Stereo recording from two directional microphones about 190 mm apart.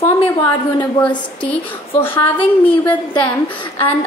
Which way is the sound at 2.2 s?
25° left (ahead or behind).